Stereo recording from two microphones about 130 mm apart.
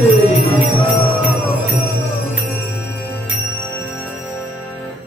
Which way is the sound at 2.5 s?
20° left (ahead or behind).